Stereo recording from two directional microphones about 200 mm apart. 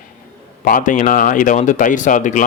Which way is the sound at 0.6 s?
40° left (ahead or behind).